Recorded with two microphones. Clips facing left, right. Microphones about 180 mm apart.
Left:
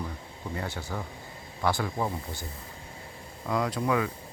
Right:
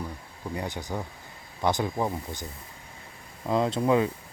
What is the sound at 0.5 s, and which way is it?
Speech, 15° right (ahead or behind).